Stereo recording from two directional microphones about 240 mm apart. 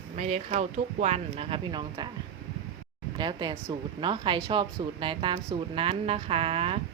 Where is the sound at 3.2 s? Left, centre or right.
Centre.